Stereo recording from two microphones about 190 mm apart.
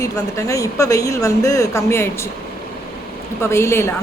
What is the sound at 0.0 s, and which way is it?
A woman's voice, 15° left (ahead or behind).